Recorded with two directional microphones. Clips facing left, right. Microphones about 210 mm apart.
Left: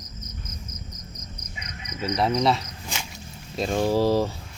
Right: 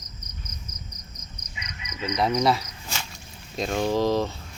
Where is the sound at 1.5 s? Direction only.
45° left (ahead or behind).